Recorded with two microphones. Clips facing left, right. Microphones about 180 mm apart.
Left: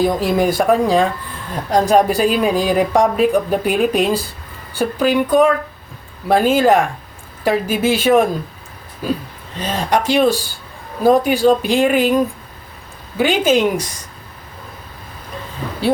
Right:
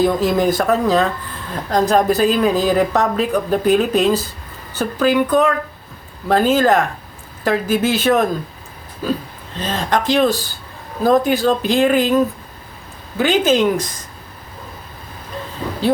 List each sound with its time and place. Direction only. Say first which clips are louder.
0.0 s a woman's voice: even; 10° left (ahead or behind)